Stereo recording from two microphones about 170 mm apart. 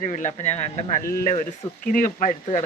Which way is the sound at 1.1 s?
60° left (ahead or behind).